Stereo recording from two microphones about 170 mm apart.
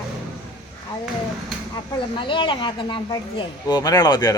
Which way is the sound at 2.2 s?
30° left (ahead or behind).